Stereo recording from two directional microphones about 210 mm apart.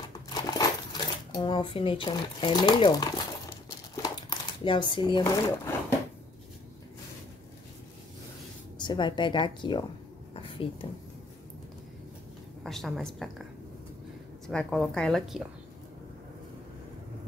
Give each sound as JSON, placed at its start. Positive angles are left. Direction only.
{"t": 0.3, "sound": "speech", "side_deg": 20}
{"t": 8.8, "sound": "a woman's voice", "side_deg": 20}
{"t": 10.3, "sound": "a sound", "side_deg": 25}
{"t": 12.6, "sound": "a woman's voice", "side_deg": 0}
{"t": 14.5, "sound": "a woman's voice", "side_deg": 5}